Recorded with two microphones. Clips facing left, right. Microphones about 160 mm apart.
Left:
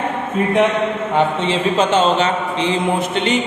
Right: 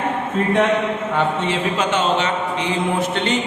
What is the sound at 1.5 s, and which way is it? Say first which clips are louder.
A man's voice: left 4 dB; 30° left (ahead or behind).